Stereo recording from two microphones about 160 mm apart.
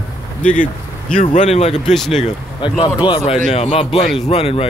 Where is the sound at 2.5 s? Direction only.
30° left (ahead or behind).